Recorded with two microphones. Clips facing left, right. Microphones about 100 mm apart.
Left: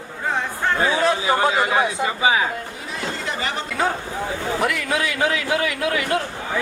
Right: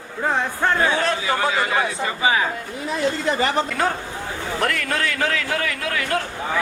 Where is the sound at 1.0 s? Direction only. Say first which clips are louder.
Left 3 dB; 20° left (ahead or behind).